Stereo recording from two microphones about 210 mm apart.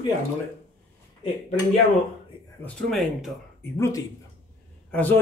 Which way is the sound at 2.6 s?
Centre (ahead or behind).